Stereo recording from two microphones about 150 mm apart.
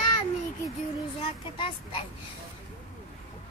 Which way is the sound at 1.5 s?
35° left (ahead or behind).